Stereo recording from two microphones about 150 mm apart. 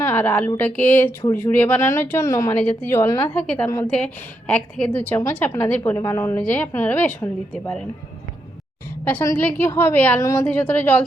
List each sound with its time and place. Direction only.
0.0 s a woman's voice: 15° left (ahead or behind)
9.0 s a woman's voice: 15° left (ahead or behind)